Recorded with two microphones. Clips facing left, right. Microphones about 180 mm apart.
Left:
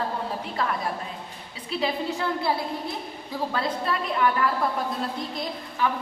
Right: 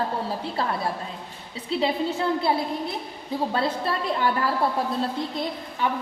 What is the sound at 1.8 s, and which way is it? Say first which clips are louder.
Speech: right 2 dB; 25° right (ahead or behind).